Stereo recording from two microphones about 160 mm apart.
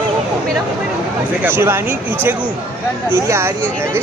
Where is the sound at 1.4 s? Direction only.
15° right (ahead or behind).